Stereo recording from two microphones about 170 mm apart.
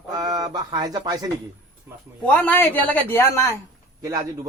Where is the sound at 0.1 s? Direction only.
25° right (ahead or behind).